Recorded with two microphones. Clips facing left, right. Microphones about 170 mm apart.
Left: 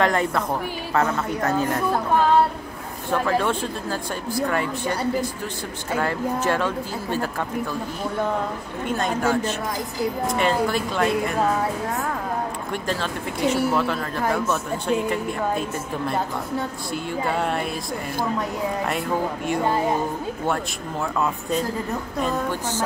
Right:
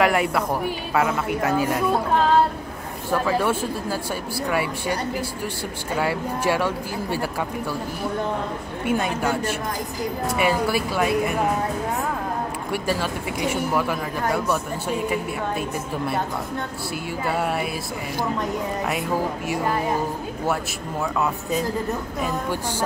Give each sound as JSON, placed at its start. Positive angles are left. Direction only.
{"t": 0.0, "sound": "speech", "side_deg": -10}
{"t": 3.1, "sound": "speech", "side_deg": -5}
{"t": 8.8, "sound": "speech", "side_deg": -10}
{"t": 12.7, "sound": "speech", "side_deg": -10}
{"t": 16.9, "sound": "speech", "side_deg": -5}
{"t": 18.9, "sound": "speech", "side_deg": -5}
{"t": 19.6, "sound": "speech", "side_deg": 25}
{"t": 21.0, "sound": "speech", "side_deg": -5}